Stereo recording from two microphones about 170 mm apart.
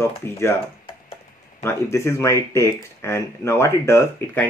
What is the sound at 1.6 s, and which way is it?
Speech, 15° left (ahead or behind).